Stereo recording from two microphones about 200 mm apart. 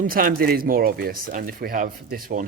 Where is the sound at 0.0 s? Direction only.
45° right (ahead or behind).